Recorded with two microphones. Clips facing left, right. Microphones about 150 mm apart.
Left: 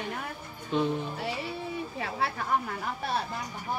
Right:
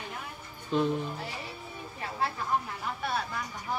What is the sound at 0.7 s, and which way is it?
Speech, centre (ahead or behind).